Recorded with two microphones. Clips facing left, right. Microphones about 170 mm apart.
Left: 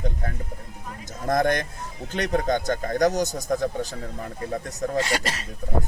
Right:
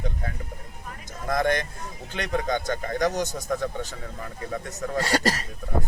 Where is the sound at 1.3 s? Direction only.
45° left (ahead or behind).